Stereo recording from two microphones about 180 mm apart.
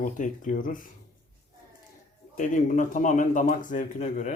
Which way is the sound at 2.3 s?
45° left (ahead or behind).